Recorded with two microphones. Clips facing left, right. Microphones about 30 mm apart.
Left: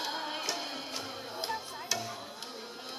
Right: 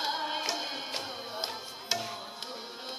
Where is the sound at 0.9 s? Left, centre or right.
Right.